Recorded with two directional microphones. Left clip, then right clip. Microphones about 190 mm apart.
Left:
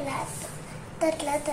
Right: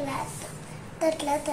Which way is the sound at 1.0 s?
Centre (ahead or behind).